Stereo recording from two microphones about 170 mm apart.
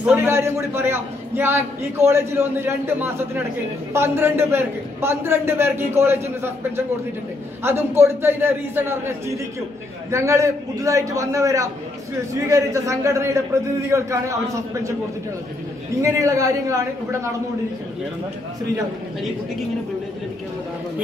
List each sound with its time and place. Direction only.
0.0 s a man's voice: 15° right (ahead or behind)
7.6 s a man's voice: 15° right (ahead or behind)
10.1 s a man's voice: 15° right (ahead or behind)
16.0 s a man's voice: 20° right (ahead or behind)